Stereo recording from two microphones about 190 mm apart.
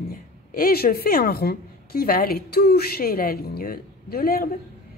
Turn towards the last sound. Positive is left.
turn(degrees=50)  # may be behind; listen again after turning